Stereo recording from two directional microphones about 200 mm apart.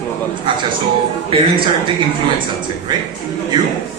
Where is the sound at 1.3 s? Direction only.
25° right (ahead or behind).